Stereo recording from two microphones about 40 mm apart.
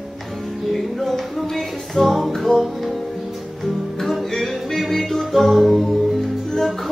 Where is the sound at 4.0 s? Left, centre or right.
Centre.